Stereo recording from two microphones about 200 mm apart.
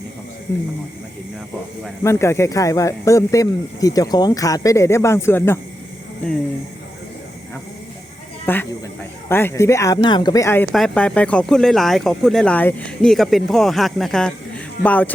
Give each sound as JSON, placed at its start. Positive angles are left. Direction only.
{"t": 2.0, "sound": "speech", "side_deg": 15}
{"t": 8.4, "sound": "speech", "side_deg": 10}